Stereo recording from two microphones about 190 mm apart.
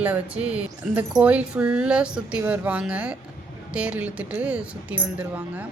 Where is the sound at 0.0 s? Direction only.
5° right (ahead or behind).